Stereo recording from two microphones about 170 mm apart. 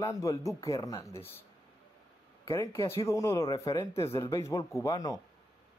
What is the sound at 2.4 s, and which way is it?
Speech, 15° left (ahead or behind).